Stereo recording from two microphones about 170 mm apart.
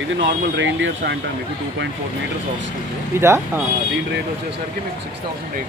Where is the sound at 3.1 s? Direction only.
15° right (ahead or behind).